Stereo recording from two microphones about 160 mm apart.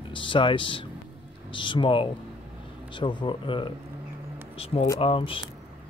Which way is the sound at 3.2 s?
30° left (ahead or behind).